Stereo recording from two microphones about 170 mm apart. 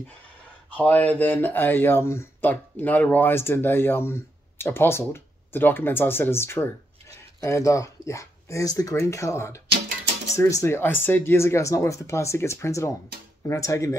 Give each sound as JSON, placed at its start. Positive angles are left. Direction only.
{"t": 0.7, "sound": "speech", "side_deg": 10}